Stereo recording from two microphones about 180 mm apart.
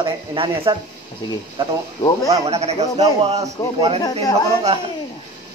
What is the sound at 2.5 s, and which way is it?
A man's voice, 35° right (ahead or behind).